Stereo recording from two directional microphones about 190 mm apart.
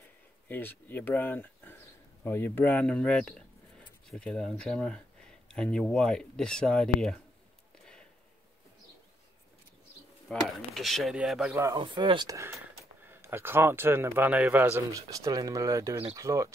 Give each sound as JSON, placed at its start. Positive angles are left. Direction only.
{"t": 0.5, "sound": "speech", "side_deg": 10}
{"t": 10.2, "sound": "speech", "side_deg": 0}
{"t": 11.5, "sound": "speech", "side_deg": -15}
{"t": 11.8, "sound": "speech", "side_deg": -25}